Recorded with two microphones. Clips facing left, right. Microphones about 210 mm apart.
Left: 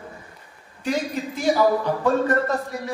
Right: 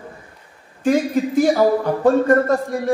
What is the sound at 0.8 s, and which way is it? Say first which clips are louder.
Speech: right 8 dB; 50° right (ahead or behind).